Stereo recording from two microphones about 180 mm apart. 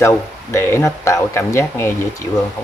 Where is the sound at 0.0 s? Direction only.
15° left (ahead or behind).